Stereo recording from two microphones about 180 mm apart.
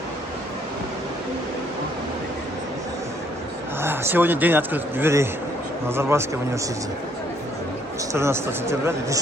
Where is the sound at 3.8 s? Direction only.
10° right (ahead or behind).